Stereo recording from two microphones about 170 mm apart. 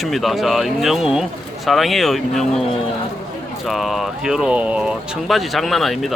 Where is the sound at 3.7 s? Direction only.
Centre (ahead or behind).